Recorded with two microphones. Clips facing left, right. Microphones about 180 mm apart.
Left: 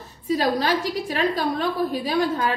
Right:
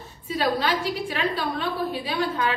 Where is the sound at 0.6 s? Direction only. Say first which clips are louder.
Left 2 dB; 40° left (ahead or behind).